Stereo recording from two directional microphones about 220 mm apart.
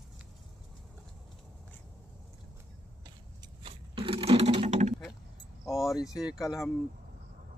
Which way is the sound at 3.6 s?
25° right (ahead or behind).